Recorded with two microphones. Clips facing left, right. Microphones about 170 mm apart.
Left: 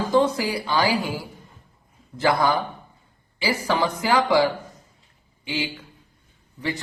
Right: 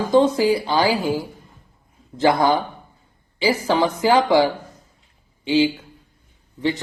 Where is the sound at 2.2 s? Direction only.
25° right (ahead or behind).